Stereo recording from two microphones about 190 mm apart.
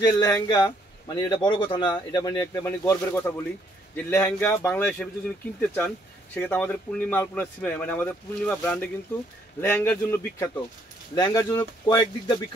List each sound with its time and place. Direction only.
0.0 s speech: 15° left (ahead or behind)